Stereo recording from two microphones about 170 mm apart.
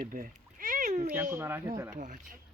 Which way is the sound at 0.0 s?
55° right (ahead or behind).